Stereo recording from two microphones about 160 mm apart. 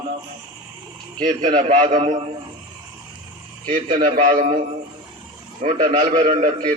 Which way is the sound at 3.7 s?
55° right (ahead or behind).